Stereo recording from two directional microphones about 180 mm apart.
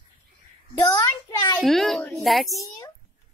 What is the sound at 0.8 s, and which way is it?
Child singing, 20° left (ahead or behind).